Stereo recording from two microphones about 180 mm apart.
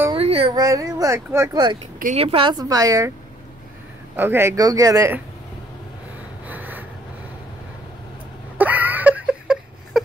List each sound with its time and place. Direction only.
0.1 s a sound: 30° right (ahead or behind)
0.6 s a woman's voice: 20° right (ahead or behind)
4.2 s speech: 15° right (ahead or behind)
6.4 s snort: 10° right (ahead or behind)
8.5 s whimper: 10° right (ahead or behind)